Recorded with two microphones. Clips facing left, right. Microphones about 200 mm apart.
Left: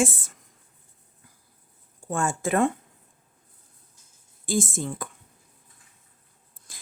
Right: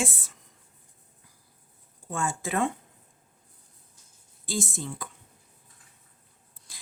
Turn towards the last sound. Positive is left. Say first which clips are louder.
# left 2 dB
turn(degrees=50)  # may be behind; listen again after turning